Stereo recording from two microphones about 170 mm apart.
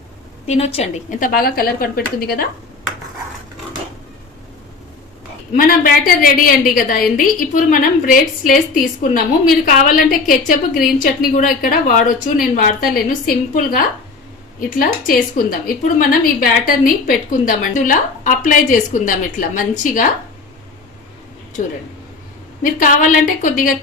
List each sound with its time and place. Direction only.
0.4 s a woman's voice: 40° left (ahead or behind)
1.2 s a woman's voice: 60° left (ahead or behind)
5.5 s a woman's voice: 55° left (ahead or behind)
22.6 s a woman's voice: 50° left (ahead or behind)